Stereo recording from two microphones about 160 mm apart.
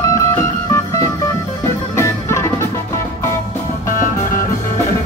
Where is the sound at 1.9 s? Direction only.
15° left (ahead or behind).